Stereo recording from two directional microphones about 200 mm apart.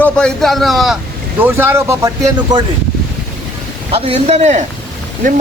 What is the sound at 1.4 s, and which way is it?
Speech, 10° right (ahead or behind).